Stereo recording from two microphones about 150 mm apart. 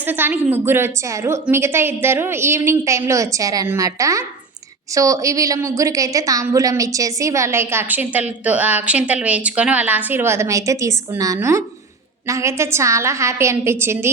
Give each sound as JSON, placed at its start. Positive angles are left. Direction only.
{"t": 0.0, "sound": "a woman's voice", "side_deg": -10}